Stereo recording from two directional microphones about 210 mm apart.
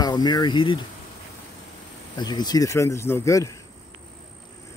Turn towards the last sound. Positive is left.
turn(degrees=15)  # may be behind; listen again after turning